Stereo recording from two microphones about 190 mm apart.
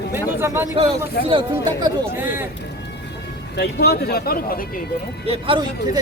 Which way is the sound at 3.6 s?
60° left (ahead or behind).